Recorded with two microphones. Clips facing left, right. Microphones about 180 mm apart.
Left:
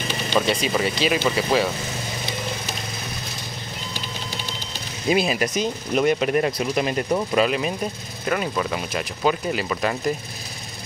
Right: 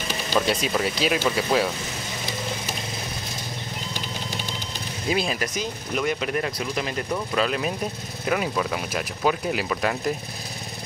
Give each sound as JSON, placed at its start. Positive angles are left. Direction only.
{"t": 0.4, "sound": "speech", "side_deg": 0}
{"t": 5.1, "sound": "speech", "side_deg": 10}
{"t": 7.3, "sound": "speech", "side_deg": 5}